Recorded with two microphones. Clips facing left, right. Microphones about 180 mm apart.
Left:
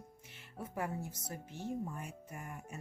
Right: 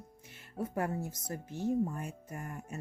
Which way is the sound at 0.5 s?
45° right (ahead or behind).